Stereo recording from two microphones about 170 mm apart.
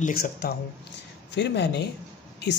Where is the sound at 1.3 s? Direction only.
90° left.